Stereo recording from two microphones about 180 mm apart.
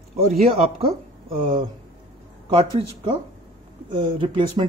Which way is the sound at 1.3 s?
30° right (ahead or behind).